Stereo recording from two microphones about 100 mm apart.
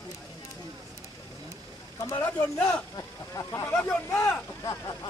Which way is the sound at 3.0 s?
30° left (ahead or behind).